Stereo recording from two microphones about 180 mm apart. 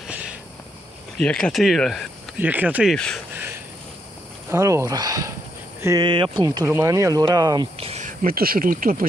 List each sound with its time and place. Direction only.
1.1 s speech: 5° left (ahead or behind)
4.5 s speech: 15° right (ahead or behind)
7.7 s speech: 35° right (ahead or behind); by 9.0 s 50° right (ahead or behind)